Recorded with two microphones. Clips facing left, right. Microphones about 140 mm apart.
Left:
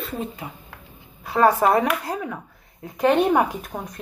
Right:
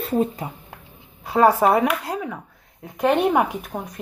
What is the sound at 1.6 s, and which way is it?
Speech, 5° right (ahead or behind).